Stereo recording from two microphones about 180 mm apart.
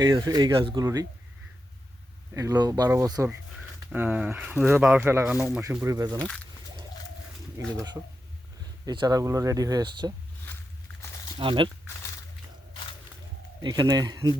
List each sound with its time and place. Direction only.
0.0 s speech: 20° right (ahead or behind)
2.3 s speech: 20° right (ahead or behind)
7.8 s speech: 20° right (ahead or behind)
11.3 s speech: 25° right (ahead or behind)
13.6 s speech: 25° right (ahead or behind)